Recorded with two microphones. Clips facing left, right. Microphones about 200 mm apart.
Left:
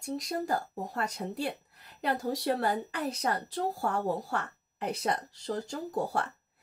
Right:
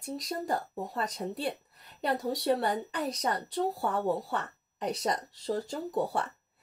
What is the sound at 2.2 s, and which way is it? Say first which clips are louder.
Speech: right 2 dB; centre (ahead or behind).